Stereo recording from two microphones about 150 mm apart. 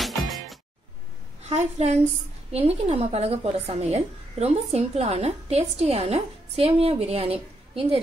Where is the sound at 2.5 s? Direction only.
45° right (ahead or behind).